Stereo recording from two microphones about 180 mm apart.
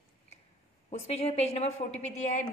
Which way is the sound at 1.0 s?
35° left (ahead or behind).